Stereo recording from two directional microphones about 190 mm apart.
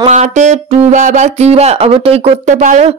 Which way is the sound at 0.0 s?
35° right (ahead or behind).